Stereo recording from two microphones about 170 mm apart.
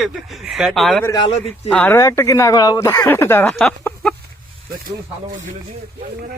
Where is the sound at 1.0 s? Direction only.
20° left (ahead or behind).